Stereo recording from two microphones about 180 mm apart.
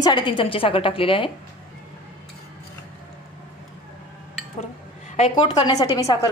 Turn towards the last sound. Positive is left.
turn(degrees=20)  # may be behind; listen again after turning